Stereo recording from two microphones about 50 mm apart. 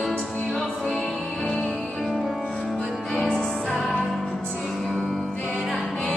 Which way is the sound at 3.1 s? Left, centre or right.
Centre.